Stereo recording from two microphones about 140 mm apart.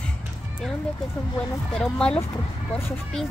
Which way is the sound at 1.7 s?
5° left (ahead or behind).